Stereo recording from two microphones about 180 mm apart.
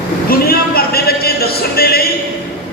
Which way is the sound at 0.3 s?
55° left (ahead or behind).